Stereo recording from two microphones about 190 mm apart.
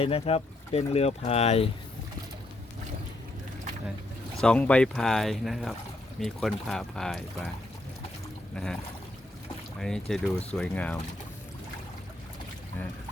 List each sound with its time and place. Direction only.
0.0 s speech: 30° left (ahead or behind)
4.4 s speech: 5° left (ahead or behind)
8.5 s speech: 5° left (ahead or behind)
9.8 s speech: 5° left (ahead or behind)